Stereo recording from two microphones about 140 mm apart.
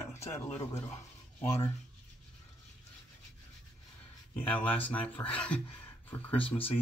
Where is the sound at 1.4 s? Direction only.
20° left (ahead or behind).